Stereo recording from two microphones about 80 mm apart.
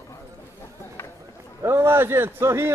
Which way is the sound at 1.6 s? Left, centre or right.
Right.